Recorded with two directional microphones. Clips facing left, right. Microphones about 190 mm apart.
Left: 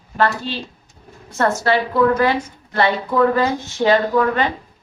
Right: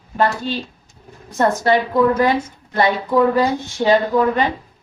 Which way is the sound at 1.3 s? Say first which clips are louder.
Right 2 dB; 15° right (ahead or behind).